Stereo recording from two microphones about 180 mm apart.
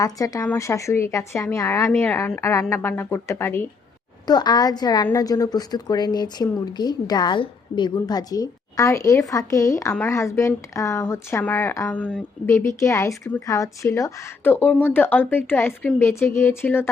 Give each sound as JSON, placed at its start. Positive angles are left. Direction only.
{"t": 0.0, "sound": "speech", "side_deg": 20}
{"t": 4.3, "sound": "speech", "side_deg": 25}